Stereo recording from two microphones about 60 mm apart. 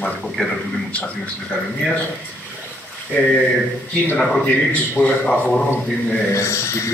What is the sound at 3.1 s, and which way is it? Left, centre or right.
Speech, left.